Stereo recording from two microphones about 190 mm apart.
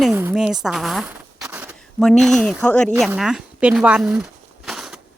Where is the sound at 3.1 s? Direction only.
5° right (ahead or behind).